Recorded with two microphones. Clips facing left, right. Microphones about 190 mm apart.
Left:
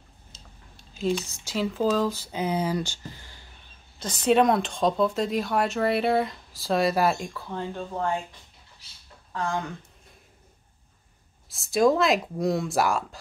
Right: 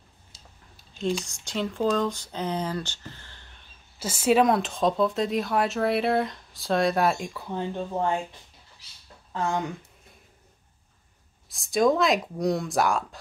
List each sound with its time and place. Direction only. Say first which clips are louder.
0.7 s speech: left 1 dB; centre (ahead or behind)
4.0 s speech: even; 5° right (ahead or behind)
7.3 s speech: right 2 dB; 15° right (ahead or behind)
9.3 s speech: right 2 dB; 20° right (ahead or behind)
11.4 s speech: left 1 dB; centre (ahead or behind)